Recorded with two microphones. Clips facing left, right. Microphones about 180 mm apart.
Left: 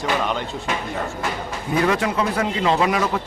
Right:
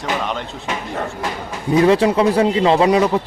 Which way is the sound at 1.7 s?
25° right (ahead or behind).